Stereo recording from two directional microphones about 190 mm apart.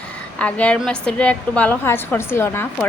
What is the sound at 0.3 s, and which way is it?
A woman's voice, 5° left (ahead or behind).